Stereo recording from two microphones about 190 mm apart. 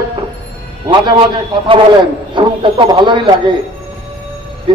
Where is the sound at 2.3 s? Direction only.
25° right (ahead or behind).